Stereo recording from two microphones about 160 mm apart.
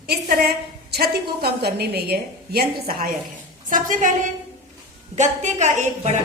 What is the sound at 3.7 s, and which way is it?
A woman's voice, 55° right (ahead or behind).